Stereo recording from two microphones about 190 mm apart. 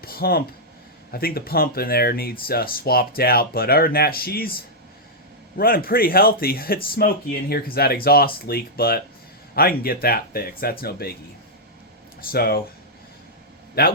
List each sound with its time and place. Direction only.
0.0 s speech: 50° left (ahead or behind)
12.3 s speech: 55° left (ahead or behind)
13.8 s speech: 55° left (ahead or behind)